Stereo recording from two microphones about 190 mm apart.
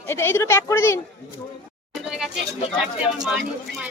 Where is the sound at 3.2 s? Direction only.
5° right (ahead or behind).